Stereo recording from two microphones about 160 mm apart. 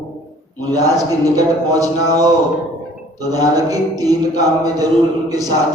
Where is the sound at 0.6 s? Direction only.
25° right (ahead or behind).